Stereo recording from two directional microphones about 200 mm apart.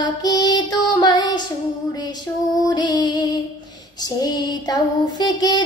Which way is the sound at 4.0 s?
20° left (ahead or behind).